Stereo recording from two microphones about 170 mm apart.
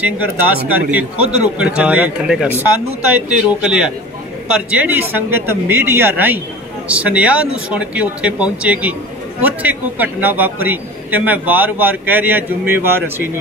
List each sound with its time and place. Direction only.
0.7 s a man's voice: 10° right (ahead or behind)